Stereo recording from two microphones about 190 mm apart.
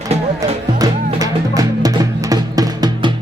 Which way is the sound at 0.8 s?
20° right (ahead or behind).